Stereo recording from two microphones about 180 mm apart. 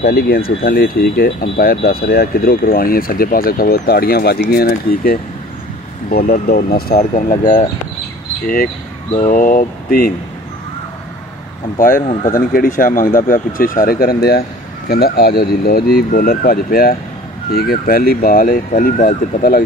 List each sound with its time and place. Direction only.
0.0 s speech: 60° left (ahead or behind)
9.1 s speech: 45° left (ahead or behind)
11.8 s speech: 50° left (ahead or behind)